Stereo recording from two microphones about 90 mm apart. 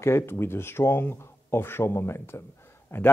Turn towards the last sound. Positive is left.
turn(degrees=25)  # may be behind; listen again after turning